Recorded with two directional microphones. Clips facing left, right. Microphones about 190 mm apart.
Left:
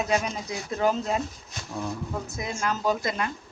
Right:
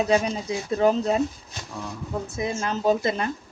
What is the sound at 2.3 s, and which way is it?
Speech, 30° right (ahead or behind).